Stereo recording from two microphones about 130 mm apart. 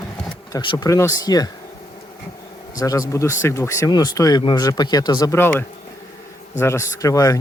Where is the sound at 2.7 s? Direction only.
25° left (ahead or behind).